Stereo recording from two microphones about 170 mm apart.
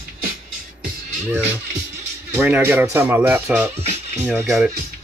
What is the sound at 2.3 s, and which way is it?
Speech, 10° right (ahead or behind).